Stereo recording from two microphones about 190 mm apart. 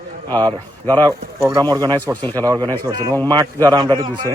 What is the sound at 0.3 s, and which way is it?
Speech, 25° right (ahead or behind).